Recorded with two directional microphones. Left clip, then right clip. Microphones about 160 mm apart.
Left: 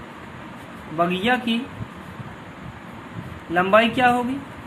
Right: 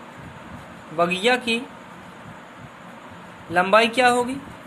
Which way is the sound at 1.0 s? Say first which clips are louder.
Right 1 dB; 30° right (ahead or behind).